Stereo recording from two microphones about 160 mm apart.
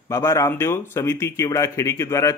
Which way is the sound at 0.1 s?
15° left (ahead or behind).